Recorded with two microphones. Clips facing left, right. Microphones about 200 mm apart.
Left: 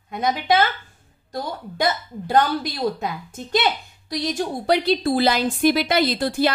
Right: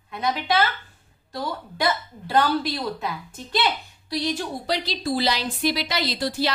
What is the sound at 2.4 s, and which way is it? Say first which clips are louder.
A woman's voice: even; 45° left (ahead or behind).